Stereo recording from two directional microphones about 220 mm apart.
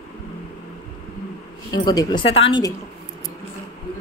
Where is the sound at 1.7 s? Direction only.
20° left (ahead or behind).